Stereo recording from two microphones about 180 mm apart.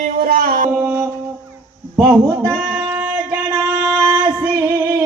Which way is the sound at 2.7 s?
10° right (ahead or behind).